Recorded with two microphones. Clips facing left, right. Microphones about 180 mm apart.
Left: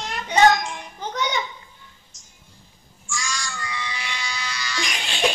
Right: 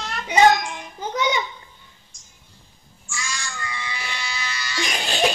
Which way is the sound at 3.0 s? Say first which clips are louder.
Left 2 dB; 10° right (ahead or behind).